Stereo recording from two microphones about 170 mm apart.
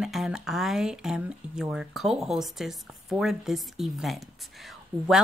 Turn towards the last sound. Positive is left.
turn(degrees=0)  # may be behind; listen again after turning